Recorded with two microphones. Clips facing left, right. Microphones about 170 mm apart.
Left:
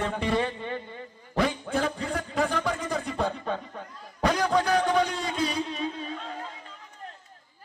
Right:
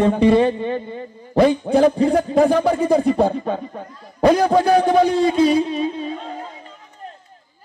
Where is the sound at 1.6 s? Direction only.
35° right (ahead or behind).